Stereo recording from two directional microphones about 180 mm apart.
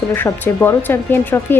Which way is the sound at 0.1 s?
10° left (ahead or behind).